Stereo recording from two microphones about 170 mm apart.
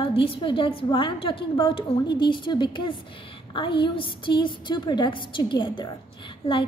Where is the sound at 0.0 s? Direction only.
30° left (ahead or behind).